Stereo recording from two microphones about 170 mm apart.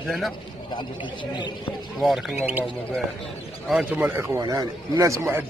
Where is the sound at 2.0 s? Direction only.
5° right (ahead or behind).